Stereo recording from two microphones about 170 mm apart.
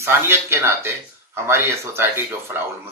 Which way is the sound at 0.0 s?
15° right (ahead or behind).